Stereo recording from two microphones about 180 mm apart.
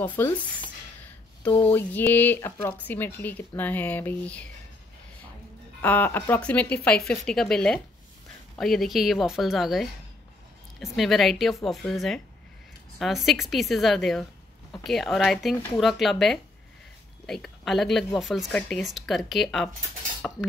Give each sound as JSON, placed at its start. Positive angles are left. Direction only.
{"t": 0.0, "sound": "speech", "side_deg": 10}
{"t": 1.4, "sound": "speech", "side_deg": 10}
{"t": 5.8, "sound": "speech", "side_deg": 10}
{"t": 20.2, "sound": "cutlery", "side_deg": 0}